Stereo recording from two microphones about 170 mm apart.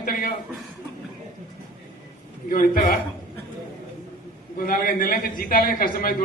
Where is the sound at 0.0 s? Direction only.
55° left (ahead or behind).